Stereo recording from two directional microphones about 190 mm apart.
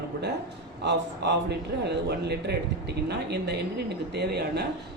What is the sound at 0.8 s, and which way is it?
A man's voice, 65° right (ahead or behind).